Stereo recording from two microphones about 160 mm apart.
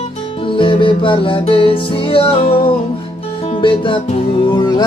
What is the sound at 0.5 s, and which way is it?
Music, 30° left (ahead or behind).